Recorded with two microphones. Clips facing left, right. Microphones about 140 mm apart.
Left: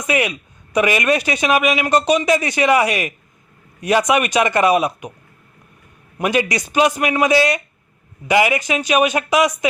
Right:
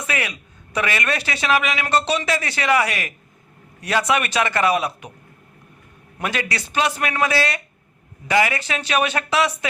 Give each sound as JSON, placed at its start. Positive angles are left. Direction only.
{"t": 0.0, "sound": "a man's voice", "side_deg": 20}
{"t": 6.1, "sound": "a man's voice", "side_deg": 15}